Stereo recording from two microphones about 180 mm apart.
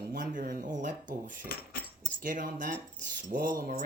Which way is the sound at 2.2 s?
50° right (ahead or behind).